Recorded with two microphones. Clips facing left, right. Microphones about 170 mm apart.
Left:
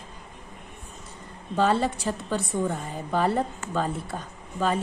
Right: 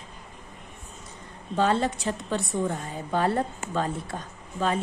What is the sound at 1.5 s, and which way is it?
Speech, centre (ahead or behind).